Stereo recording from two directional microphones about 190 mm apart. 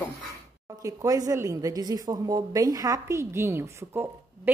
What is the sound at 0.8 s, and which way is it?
A woman's voice, 20° right (ahead or behind).